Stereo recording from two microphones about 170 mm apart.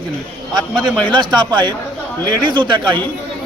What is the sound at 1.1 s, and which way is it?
A man's voice, 25° right (ahead or behind).